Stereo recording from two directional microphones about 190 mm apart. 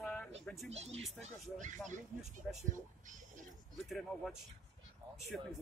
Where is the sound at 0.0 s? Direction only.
5° left (ahead or behind).